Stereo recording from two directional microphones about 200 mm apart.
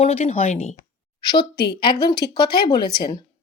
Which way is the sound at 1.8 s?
25° left (ahead or behind).